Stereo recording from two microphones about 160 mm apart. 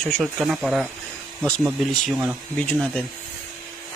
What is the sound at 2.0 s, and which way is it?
Speech, 5° right (ahead or behind).